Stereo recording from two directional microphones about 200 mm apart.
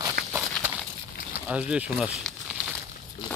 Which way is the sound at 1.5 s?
5° right (ahead or behind).